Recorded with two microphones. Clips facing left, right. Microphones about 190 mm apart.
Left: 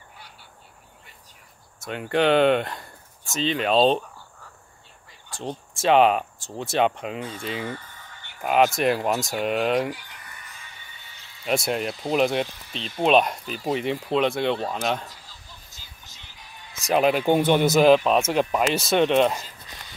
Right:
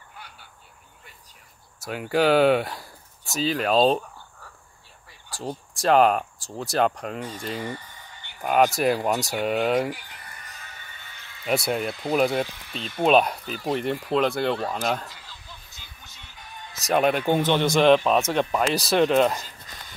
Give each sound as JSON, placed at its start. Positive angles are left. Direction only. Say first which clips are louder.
{"t": 1.9, "sound": "speech", "louder": "even", "side_deg": -5}
{"t": 5.3, "sound": "speech", "louder": "even", "side_deg": -5}
{"t": 7.6, "sound": "speech", "louder": "even", "side_deg": -10}
{"t": 8.4, "sound": "speech", "louder": "even", "side_deg": 0}
{"t": 10.1, "sound": "music", "louder": "right 1 dB", "side_deg": -40}
{"t": 11.4, "sound": "speech", "louder": "even", "side_deg": 0}
{"t": 12.4, "sound": "speech", "louder": "right 1 dB", "side_deg": -65}
{"t": 12.8, "sound": "speech", "louder": "even", "side_deg": 0}
{"t": 15.0, "sound": "music", "louder": "right 2 dB", "side_deg": -65}
{"t": 16.8, "sound": "speech", "louder": "left 1 dB", "side_deg": 0}